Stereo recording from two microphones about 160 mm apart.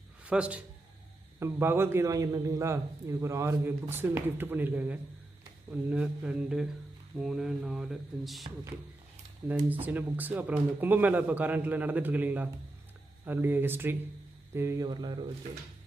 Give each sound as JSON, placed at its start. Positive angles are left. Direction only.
{"t": 0.3, "sound": "a man's voice", "side_deg": -5}
{"t": 9.5, "sound": "a man's voice", "side_deg": -10}
{"t": 14.5, "sound": "a sound", "side_deg": -15}